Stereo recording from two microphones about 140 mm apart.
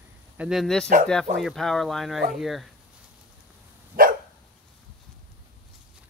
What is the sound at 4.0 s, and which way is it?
Dog, 90° right.